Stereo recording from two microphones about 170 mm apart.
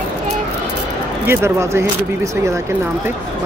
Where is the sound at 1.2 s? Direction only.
15° right (ahead or behind).